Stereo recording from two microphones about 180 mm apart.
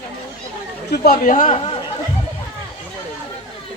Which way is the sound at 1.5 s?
35° left (ahead or behind).